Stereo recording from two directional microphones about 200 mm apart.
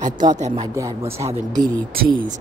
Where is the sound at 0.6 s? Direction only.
15° right (ahead or behind).